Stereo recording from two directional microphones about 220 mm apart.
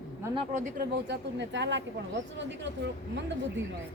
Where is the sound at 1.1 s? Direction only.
55° right (ahead or behind).